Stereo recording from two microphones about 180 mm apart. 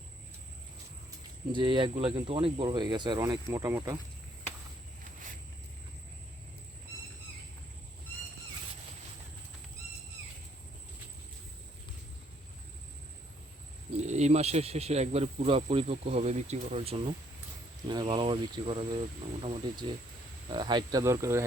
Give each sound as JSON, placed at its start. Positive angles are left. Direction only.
{"t": 1.5, "sound": "speech", "side_deg": -25}
{"t": 13.9, "sound": "speech", "side_deg": -40}